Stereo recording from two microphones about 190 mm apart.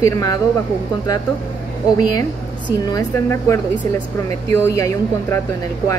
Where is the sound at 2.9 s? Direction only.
15° left (ahead or behind).